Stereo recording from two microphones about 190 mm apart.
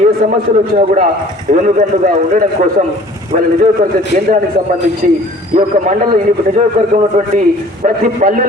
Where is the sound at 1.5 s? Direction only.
40° right (ahead or behind).